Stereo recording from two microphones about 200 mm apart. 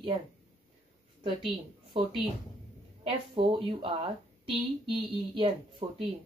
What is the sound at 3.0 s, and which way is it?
Speech, 25° right (ahead or behind).